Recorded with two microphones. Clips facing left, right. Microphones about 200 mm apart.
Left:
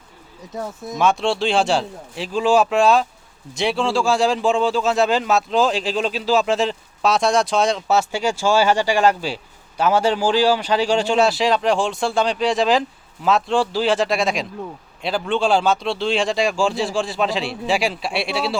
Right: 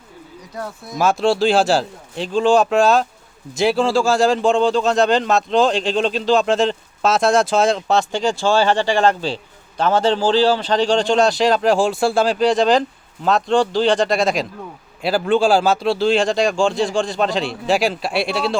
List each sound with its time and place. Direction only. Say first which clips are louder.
0.9 s speech: right 3 dB; 5° right (ahead or behind)